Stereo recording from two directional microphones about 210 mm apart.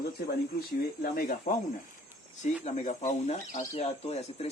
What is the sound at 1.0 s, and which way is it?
Speech, 45° left (ahead or behind).